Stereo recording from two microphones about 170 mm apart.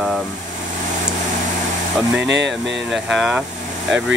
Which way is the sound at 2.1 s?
90° right.